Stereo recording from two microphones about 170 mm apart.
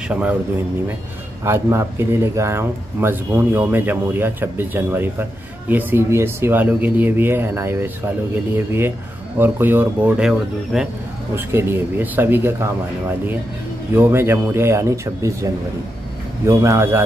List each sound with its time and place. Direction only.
0.1 s speech: 10° right (ahead or behind)
1.4 s speech: 15° right (ahead or behind)
13.9 s speech: 15° right (ahead or behind)